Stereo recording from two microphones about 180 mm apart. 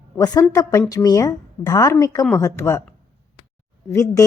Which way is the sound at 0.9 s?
20° left (ahead or behind).